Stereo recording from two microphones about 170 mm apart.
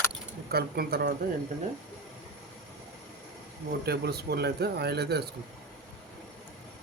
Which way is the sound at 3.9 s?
70° right (ahead or behind).